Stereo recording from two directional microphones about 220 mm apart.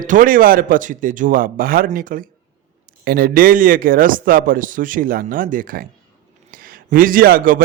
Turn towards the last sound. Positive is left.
turn(degrees=-40)  # may be behind; listen again after turning